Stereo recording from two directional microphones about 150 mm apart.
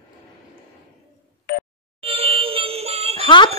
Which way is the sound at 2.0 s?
40° right (ahead or behind).